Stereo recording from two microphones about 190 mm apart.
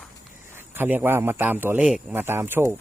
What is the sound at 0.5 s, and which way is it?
A man's voice, 10° right (ahead or behind).